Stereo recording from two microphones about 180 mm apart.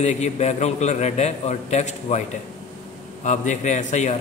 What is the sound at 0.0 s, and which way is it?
A man's voice, 40° left (ahead or behind).